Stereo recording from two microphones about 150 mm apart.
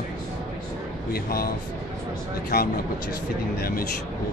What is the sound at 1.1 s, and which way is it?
Speech, 85° left.